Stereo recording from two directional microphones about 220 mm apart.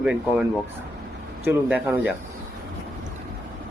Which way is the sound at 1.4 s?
10° right (ahead or behind).